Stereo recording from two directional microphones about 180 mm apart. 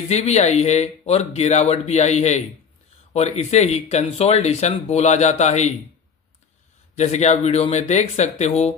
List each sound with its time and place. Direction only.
0.1 s speech: 40° left (ahead or behind)
7.0 s speech: 40° left (ahead or behind)